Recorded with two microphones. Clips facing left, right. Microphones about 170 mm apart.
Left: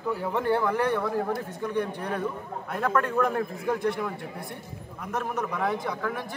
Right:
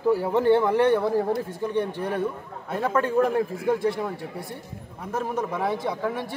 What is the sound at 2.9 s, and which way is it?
A man's voice, 30° right (ahead or behind).